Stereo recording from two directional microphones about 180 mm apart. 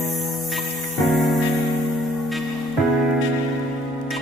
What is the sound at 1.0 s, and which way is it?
Music, centre (ahead or behind).